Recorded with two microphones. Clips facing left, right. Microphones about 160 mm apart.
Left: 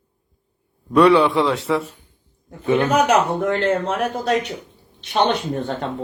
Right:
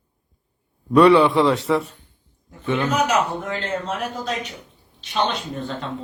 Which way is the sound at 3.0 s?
65° left (ahead or behind).